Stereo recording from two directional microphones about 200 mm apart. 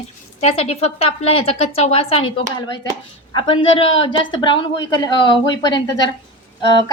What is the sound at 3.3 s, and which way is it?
A woman's voice, 25° left (ahead or behind).